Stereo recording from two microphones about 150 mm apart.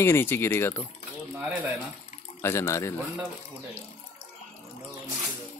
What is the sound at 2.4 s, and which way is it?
Speech, 20° left (ahead or behind).